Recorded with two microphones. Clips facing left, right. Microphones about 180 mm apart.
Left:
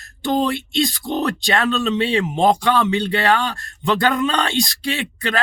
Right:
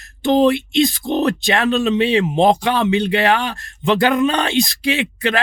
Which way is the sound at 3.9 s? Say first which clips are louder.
Right 3 dB; 20° right (ahead or behind).